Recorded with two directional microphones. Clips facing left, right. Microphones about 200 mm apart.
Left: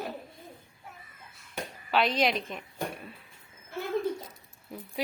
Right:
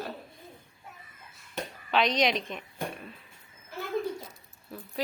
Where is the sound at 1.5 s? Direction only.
5° left (ahead or behind).